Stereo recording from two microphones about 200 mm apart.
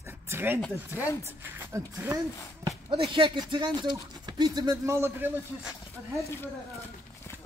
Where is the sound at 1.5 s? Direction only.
15° right (ahead or behind).